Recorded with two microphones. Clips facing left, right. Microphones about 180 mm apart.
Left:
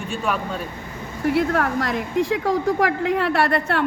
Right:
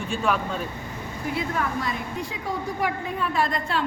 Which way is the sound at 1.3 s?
70° left (ahead or behind).